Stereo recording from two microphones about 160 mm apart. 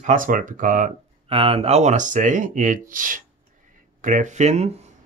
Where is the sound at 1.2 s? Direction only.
35° right (ahead or behind).